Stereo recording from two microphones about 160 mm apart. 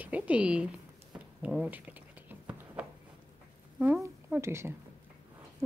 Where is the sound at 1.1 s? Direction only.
5° right (ahead or behind).